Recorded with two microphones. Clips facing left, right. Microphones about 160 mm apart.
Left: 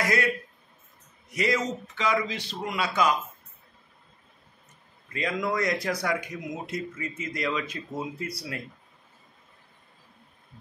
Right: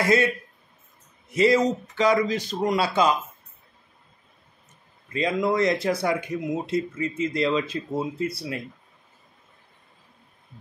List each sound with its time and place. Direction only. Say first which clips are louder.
0.0 s a man's voice: right 5 dB; 25° right (ahead or behind)
1.3 s a man's voice: right 8 dB; 30° right (ahead or behind)
5.1 s a man's voice: right 5 dB; 25° right (ahead or behind)